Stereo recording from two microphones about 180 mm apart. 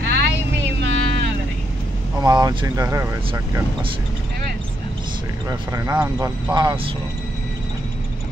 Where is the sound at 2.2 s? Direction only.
25° right (ahead or behind).